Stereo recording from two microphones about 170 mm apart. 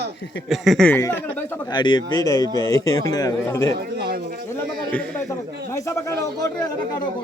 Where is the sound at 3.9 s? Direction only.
70° right (ahead or behind).